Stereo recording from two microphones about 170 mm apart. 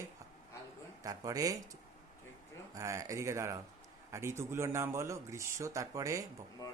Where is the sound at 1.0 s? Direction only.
20° right (ahead or behind).